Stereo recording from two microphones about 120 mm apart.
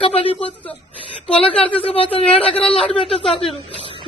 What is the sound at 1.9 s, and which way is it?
A man's voice, 50° left (ahead or behind).